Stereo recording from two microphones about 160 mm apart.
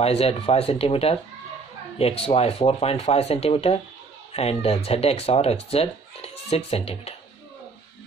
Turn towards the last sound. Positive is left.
turn(degrees=40)  # may be behind; listen again after turning